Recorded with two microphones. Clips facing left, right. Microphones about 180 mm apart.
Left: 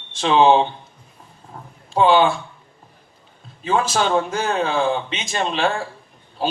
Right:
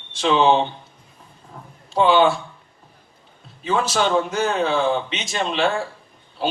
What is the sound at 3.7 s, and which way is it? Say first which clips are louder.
A man's voice: left 1 dB; 45° left (ahead or behind).